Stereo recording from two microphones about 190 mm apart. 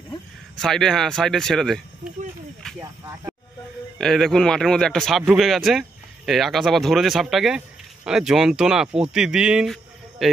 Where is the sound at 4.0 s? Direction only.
Centre (ahead or behind).